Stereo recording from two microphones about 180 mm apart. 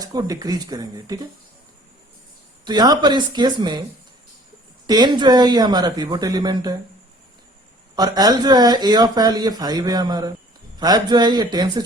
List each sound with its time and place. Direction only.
0.0 s speech: 20° right (ahead or behind)
2.6 s speech: 25° right (ahead or behind)
4.9 s speech: 25° right (ahead or behind)
7.9 s speech: 20° right (ahead or behind)